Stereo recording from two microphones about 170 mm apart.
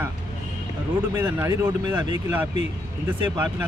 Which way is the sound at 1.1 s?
15° right (ahead or behind).